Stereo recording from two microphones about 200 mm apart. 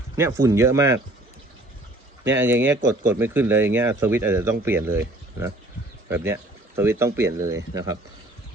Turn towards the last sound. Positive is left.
turn(degrees=-15)  # may be behind; listen again after turning